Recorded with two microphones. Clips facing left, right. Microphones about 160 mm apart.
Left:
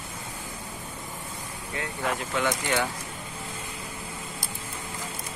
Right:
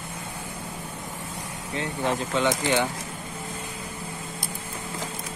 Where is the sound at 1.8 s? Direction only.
25° right (ahead or behind).